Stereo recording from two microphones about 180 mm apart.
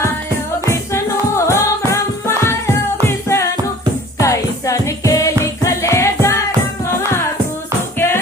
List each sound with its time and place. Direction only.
0.6 s music: 15° left (ahead or behind)
7.9 s music: 15° left (ahead or behind)